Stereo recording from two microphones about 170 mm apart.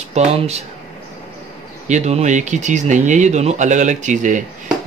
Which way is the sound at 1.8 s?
40° right (ahead or behind).